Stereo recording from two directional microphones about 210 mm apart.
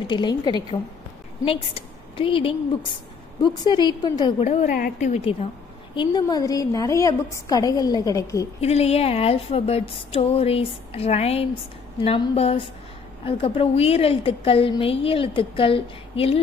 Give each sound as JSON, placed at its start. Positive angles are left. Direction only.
{"t": 0.0, "sound": "a woman's voice", "side_deg": 20}
{"t": 5.9, "sound": "a woman's voice", "side_deg": 20}
{"t": 8.5, "sound": "a woman's voice", "side_deg": 30}